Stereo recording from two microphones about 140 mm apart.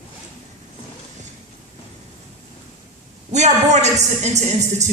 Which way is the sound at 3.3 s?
55° right (ahead or behind).